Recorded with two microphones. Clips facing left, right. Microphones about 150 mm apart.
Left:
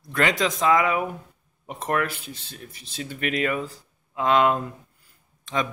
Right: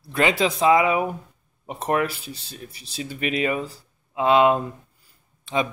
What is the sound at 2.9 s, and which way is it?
Speech, 15° right (ahead or behind).